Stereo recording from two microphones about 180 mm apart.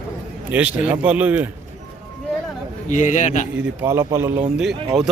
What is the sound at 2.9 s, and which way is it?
Speech, 45° left (ahead or behind).